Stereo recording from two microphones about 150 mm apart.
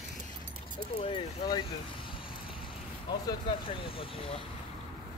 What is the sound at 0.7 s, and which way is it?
Speech, 35° left (ahead or behind).